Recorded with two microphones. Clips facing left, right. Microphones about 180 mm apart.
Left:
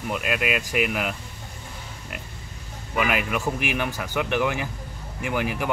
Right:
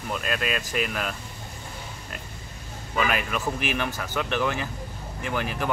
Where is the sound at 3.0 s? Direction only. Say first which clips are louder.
Left 2 dB; 15° left (ahead or behind).